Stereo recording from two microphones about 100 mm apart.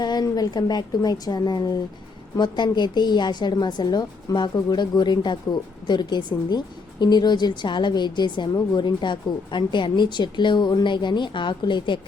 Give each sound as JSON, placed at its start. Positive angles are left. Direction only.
{"t": 0.0, "sound": "a woman's voice", "side_deg": 45}